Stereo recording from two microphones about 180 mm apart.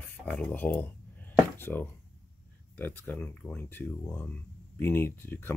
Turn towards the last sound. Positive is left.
turn(degrees=10)  # may be behind; listen again after turning